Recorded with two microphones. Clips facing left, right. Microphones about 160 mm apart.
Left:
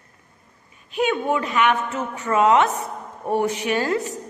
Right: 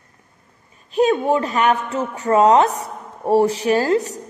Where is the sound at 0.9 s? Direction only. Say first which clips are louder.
Right 5 dB; 35° right (ahead or behind).